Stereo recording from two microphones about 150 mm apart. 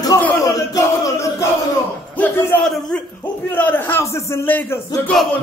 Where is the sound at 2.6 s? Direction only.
5° left (ahead or behind).